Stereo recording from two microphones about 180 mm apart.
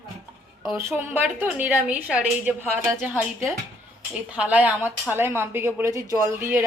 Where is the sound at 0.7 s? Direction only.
15° right (ahead or behind).